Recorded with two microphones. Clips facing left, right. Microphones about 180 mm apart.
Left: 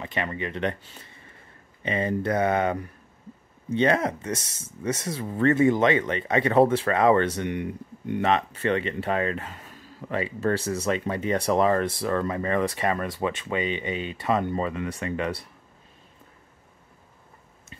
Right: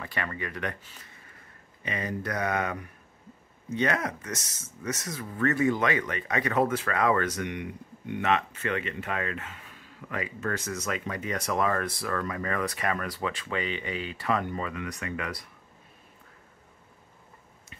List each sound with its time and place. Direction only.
0.0 s speech: 20° left (ahead or behind)